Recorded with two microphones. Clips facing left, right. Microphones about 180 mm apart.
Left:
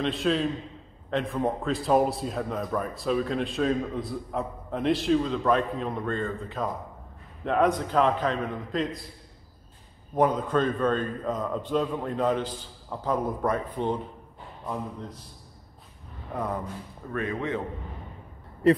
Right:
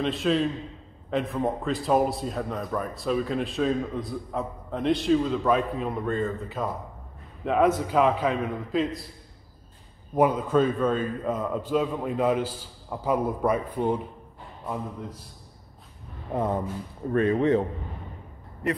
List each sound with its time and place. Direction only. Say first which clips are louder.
0.0 s a man's voice: right 1 dB; centre (ahead or behind)
10.1 s a man's voice: right 2 dB; 10° right (ahead or behind)
16.3 s speech: right 4 dB; 25° right (ahead or behind)